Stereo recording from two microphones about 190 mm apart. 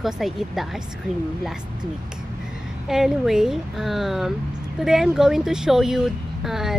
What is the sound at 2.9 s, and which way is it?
Speech, centre (ahead or behind).